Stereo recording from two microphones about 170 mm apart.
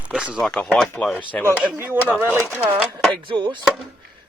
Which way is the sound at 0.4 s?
5° left (ahead or behind).